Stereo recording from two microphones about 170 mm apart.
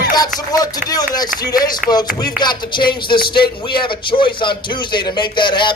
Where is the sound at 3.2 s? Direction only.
65° left (ahead or behind).